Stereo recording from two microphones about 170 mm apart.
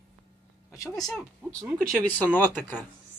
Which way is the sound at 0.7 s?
20° left (ahead or behind).